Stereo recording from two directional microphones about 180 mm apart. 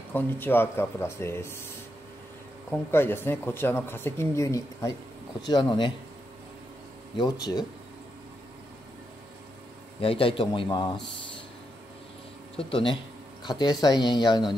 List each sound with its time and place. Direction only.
0.1 s speech: 10° left (ahead or behind)
2.7 s speech: 10° left (ahead or behind)
7.2 s speech: 20° left (ahead or behind)
9.9 s speech: 30° left (ahead or behind)
12.5 s speech: 30° left (ahead or behind)